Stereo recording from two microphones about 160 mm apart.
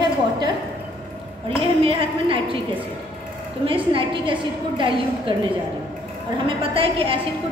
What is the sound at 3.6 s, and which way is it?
A woman's voice, 35° right (ahead or behind).